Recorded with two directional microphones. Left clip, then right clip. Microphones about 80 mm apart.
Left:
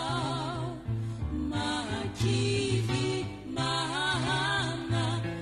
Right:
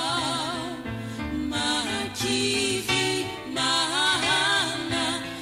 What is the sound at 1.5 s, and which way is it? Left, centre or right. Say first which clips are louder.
Music: right 6 dB; right.